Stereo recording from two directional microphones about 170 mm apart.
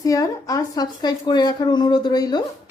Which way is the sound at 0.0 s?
20° left (ahead or behind).